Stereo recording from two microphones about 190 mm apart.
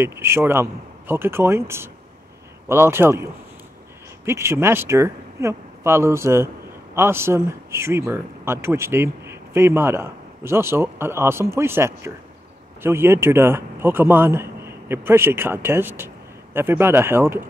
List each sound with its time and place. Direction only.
0.0 s speech: 15° right (ahead or behind)
4.3 s speech: 15° right (ahead or behind)